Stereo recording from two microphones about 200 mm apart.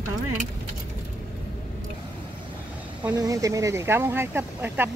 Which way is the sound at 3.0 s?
15° right (ahead or behind).